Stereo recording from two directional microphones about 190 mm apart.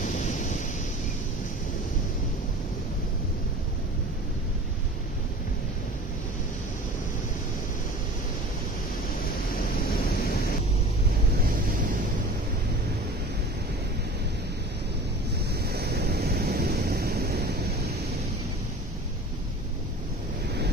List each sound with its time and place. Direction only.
0.0 s waves: 40° left (ahead or behind)
15.6 s waves: 55° right (ahead or behind)